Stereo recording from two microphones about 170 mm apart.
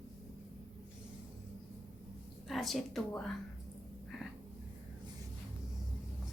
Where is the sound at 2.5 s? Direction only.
Centre (ahead or behind).